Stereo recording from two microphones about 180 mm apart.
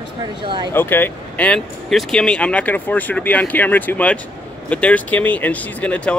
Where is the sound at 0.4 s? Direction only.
25° right (ahead or behind).